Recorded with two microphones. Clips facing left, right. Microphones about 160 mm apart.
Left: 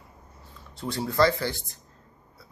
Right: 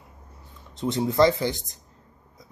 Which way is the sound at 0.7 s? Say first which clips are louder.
Right 3 dB; 20° right (ahead or behind).